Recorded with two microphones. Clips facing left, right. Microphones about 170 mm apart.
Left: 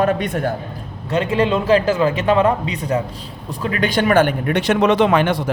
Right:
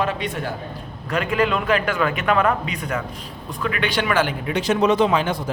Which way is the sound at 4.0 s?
50° left (ahead or behind).